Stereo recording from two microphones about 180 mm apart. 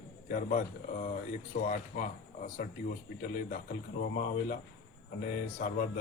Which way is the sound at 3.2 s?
50° left (ahead or behind).